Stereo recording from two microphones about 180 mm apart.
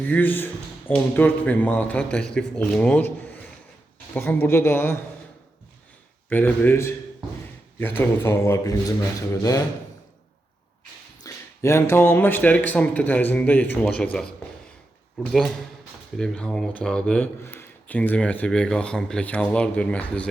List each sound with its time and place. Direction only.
0.0 s speech: 10° left (ahead or behind)
4.1 s speech: 10° left (ahead or behind)
6.2 s speech: 10° left (ahead or behind)
11.2 s speech: 15° left (ahead or behind)